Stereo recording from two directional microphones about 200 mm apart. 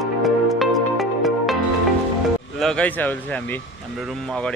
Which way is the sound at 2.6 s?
5° left (ahead or behind).